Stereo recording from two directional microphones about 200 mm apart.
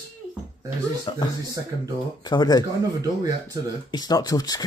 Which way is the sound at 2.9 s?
20° right (ahead or behind).